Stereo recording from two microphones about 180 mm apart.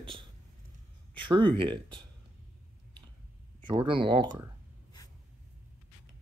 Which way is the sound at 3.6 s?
25° right (ahead or behind).